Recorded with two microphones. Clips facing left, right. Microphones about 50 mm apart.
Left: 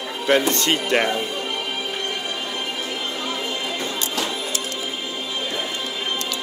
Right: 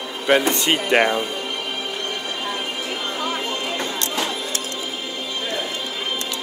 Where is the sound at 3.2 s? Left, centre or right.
Right.